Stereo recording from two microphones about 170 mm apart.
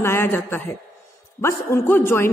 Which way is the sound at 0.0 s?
15° left (ahead or behind).